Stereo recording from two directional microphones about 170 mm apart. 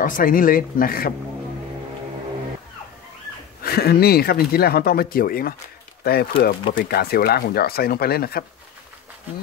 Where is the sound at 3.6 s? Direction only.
65° left (ahead or behind).